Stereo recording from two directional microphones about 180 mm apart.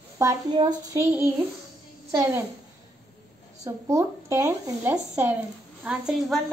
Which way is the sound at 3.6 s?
15° right (ahead or behind).